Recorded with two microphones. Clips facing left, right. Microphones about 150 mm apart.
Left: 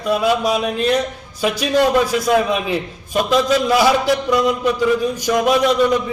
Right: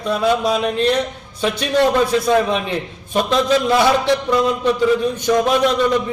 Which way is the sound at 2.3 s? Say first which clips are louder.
Even; 10° left (ahead or behind).